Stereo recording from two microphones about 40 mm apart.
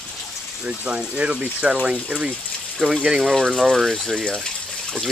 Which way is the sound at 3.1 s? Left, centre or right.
Centre.